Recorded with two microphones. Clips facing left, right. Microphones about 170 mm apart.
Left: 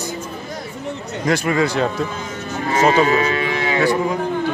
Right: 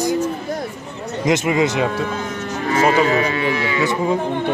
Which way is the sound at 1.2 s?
20° right (ahead or behind).